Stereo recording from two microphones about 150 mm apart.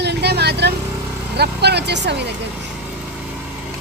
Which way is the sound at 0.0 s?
90° right.